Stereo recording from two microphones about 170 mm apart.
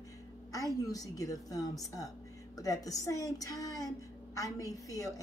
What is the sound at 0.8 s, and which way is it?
A woman's voice, 20° left (ahead or behind).